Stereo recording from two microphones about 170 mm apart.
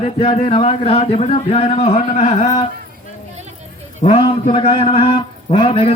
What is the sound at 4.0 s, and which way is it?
Speech, 45° left (ahead or behind).